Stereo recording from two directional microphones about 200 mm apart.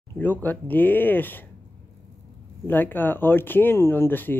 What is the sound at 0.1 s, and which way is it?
Speech, 10° left (ahead or behind).